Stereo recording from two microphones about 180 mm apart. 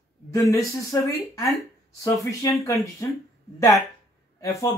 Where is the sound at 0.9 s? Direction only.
15° left (ahead or behind).